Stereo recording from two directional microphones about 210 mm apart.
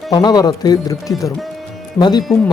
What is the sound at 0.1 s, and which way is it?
Speech, 20° left (ahead or behind).